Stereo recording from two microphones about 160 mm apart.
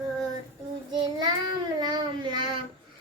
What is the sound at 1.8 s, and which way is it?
Child singing, 25° right (ahead or behind).